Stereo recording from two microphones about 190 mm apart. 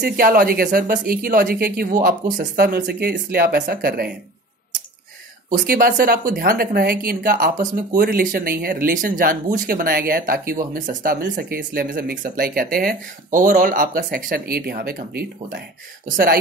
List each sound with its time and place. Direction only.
0.0 s speech: 50° right (ahead or behind)
5.5 s speech: 45° right (ahead or behind)